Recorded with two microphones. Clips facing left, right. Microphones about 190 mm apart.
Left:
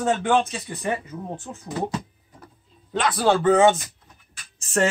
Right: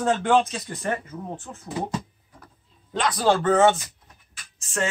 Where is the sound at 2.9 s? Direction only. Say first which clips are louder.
Left 1 dB; centre (ahead or behind).